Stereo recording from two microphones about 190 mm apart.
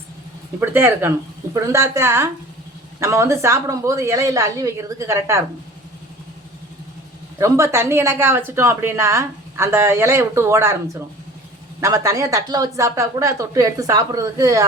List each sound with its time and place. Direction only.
0.6 s a woman's voice: 10° right (ahead or behind)
7.3 s a woman's voice: 15° right (ahead or behind)
11.8 s a woman's voice: 15° right (ahead or behind)